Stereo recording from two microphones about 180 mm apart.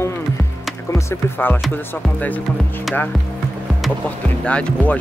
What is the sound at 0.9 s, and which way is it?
Speech, 10° left (ahead or behind).